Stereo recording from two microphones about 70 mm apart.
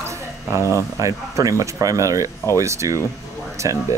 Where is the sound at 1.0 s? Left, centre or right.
Right.